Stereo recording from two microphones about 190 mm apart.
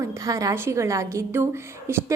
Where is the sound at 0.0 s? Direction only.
15° right (ahead or behind).